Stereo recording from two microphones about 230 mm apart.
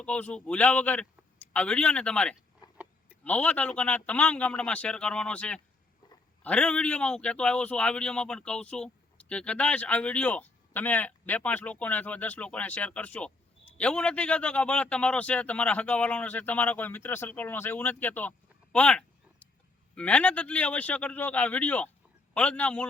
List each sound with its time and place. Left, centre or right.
0.0 s a man's voice: centre
2.6 s a sound: centre
3.2 s a man's voice: centre